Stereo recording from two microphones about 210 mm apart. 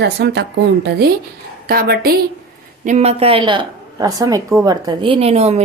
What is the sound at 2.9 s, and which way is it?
A woman's voice, 30° right (ahead or behind).